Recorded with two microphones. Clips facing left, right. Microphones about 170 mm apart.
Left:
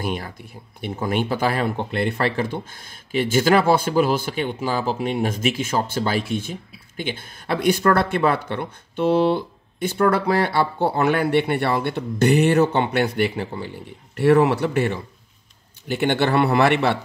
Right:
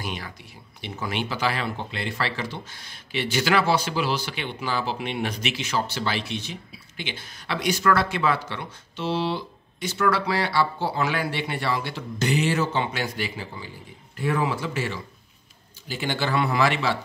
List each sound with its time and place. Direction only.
0.0 s speech: 50° left (ahead or behind)